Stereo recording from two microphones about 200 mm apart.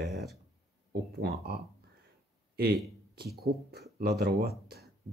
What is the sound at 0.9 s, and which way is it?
Speech, 50° right (ahead or behind).